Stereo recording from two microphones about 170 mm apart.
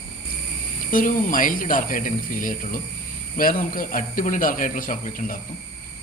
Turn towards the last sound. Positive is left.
turn(degrees=50)  # may be behind; listen again after turning